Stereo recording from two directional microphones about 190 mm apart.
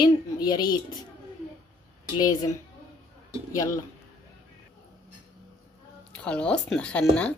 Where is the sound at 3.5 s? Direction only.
15° left (ahead or behind).